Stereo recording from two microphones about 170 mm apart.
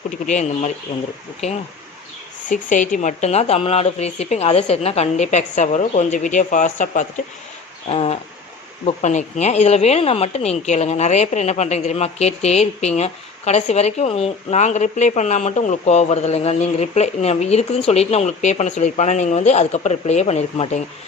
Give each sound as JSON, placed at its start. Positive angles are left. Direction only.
{"t": 0.3, "sound": "speech", "side_deg": 40}
{"t": 2.5, "sound": "speech", "side_deg": 50}
{"t": 7.9, "sound": "speech", "side_deg": 35}